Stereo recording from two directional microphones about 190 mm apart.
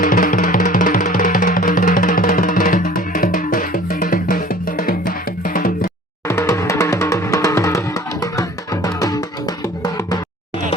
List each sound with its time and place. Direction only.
0.0 s music: 45° left (ahead or behind)
6.2 s music: 15° left (ahead or behind)